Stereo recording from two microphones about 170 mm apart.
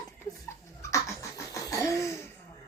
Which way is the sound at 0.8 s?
15° left (ahead or behind).